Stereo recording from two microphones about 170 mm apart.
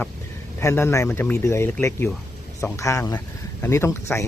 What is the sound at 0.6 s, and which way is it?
Speech, 15° left (ahead or behind).